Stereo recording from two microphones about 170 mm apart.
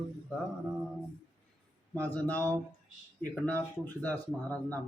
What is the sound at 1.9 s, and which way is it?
Speech, 10° left (ahead or behind).